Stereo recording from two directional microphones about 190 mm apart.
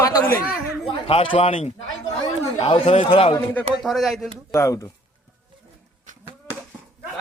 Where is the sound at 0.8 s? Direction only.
30° left (ahead or behind).